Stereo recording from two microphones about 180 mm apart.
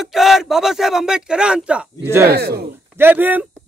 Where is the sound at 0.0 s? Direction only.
Centre (ahead or behind).